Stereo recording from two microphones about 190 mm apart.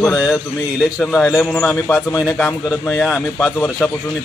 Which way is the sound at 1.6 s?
15° left (ahead or behind).